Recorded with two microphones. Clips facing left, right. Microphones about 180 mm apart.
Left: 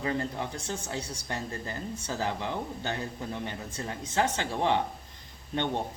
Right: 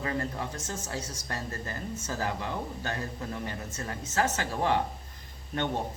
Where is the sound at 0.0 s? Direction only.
25° left (ahead or behind).